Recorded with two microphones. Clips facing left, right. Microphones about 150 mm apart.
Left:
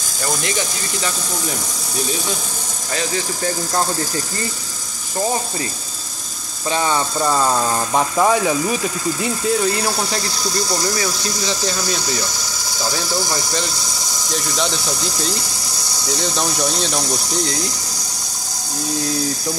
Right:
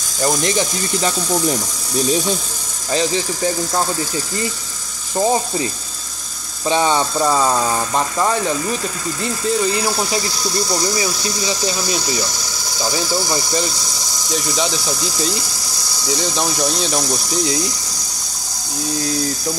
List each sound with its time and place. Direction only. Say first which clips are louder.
5.1 s speech: right 4 dB; 20° right (ahead or behind)
6.7 s speech: right 3 dB; 20° right (ahead or behind)
7.9 s speech: left 2 dB; 10° left (ahead or behind)